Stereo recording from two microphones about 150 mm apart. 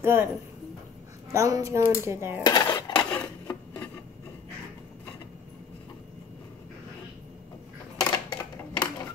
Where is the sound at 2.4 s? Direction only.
25° left (ahead or behind).